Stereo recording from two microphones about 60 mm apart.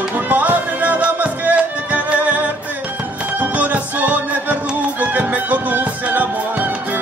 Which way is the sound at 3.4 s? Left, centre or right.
Right.